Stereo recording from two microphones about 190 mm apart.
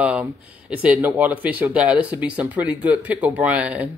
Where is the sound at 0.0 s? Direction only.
5° right (ahead or behind).